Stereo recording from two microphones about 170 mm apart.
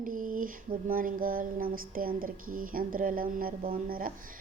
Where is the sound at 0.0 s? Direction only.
55° right (ahead or behind).